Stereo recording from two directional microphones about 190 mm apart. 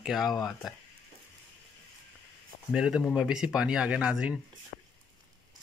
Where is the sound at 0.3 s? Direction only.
20° left (ahead or behind).